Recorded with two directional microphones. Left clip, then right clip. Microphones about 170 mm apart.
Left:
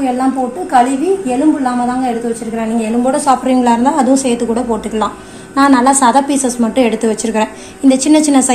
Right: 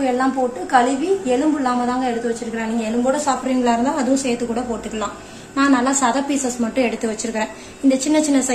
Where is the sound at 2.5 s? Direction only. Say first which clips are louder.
Left 6 dB; 45° left (ahead or behind).